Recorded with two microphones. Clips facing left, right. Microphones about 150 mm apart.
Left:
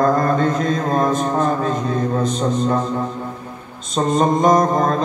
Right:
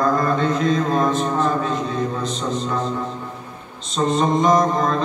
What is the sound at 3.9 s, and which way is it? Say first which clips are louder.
Mantra: left 2 dB; 50° left (ahead or behind).